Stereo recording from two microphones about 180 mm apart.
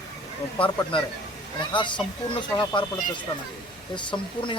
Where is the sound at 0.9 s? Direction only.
30° left (ahead or behind).